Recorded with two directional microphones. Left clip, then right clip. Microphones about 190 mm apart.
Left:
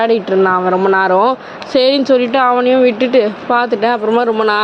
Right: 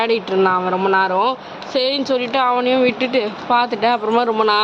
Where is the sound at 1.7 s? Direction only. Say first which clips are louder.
Left 7 dB; 40° left (ahead or behind).